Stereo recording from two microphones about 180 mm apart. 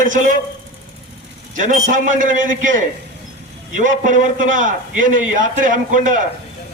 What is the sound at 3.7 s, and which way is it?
A man's voice, 45° right (ahead or behind).